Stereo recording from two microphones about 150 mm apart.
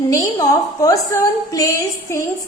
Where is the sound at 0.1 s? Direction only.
20° left (ahead or behind).